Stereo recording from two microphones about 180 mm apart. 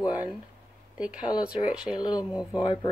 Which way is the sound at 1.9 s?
25° left (ahead or behind).